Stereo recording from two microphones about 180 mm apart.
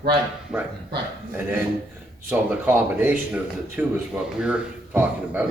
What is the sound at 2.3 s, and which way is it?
Speech, 10° right (ahead or behind).